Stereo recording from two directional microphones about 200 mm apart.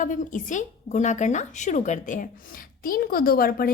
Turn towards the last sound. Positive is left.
turn(degrees=50)  # may be behind; listen again after turning